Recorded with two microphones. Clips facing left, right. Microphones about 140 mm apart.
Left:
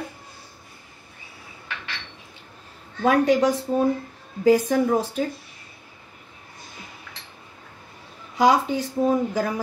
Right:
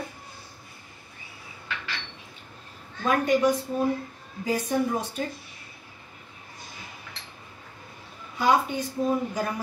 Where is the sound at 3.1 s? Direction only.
90° left.